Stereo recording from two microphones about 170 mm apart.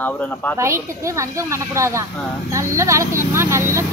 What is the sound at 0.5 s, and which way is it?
Speech, 15° right (ahead or behind).